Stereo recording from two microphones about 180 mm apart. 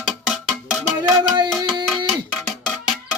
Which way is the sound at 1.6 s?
25° right (ahead or behind).